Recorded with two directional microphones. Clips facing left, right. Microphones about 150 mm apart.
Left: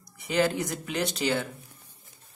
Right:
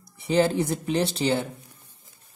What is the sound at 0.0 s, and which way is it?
Speech, 30° right (ahead or behind).